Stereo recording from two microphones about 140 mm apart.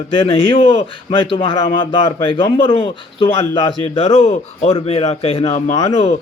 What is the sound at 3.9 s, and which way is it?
A man's voice, 45° left (ahead or behind).